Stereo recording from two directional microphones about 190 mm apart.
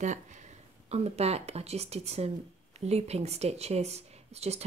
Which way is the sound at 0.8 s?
35° right (ahead or behind).